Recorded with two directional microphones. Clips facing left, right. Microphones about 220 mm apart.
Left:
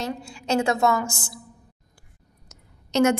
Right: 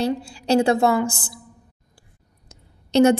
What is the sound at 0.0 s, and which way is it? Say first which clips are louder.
A woman's voice: right 7 dB; 35° right (ahead or behind).